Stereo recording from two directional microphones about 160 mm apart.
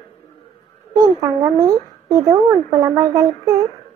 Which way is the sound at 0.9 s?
25° right (ahead or behind).